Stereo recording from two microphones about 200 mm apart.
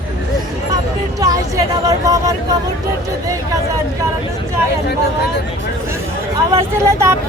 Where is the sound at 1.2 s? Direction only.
15° right (ahead or behind).